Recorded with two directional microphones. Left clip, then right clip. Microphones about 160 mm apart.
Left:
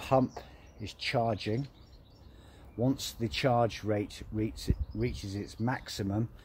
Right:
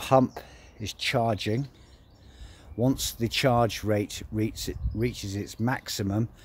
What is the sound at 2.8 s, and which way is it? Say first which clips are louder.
Speech: right 5 dB; 50° right (ahead or behind).